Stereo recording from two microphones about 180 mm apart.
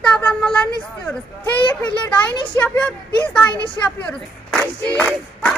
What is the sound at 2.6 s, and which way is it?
Speech, 15° left (ahead or behind).